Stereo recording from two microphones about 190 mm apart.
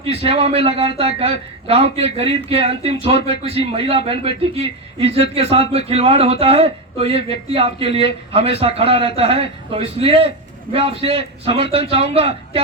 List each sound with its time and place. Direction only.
0.0 s speech: 30° right (ahead or behind)